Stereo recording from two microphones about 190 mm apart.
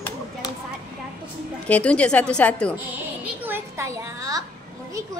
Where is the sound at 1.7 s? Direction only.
5° left (ahead or behind).